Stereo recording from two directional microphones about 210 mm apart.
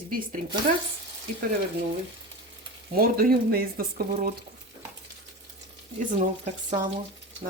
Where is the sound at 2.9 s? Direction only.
45° right (ahead or behind).